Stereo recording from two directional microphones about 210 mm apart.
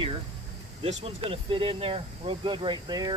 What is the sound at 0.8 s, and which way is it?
Speech, 30° right (ahead or behind).